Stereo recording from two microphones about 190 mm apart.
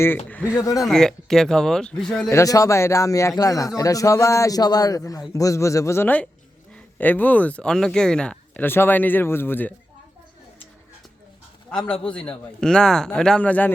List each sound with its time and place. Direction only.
0.8 s a man's voice: centre (ahead or behind)
2.3 s speech: 15° left (ahead or behind)
11.7 s a man's voice: 5° left (ahead or behind)